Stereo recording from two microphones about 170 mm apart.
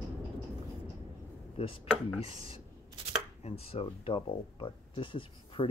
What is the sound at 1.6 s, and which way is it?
Speech, 35° left (ahead or behind).